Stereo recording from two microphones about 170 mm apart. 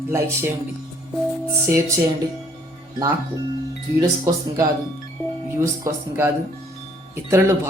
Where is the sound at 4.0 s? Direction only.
20° right (ahead or behind).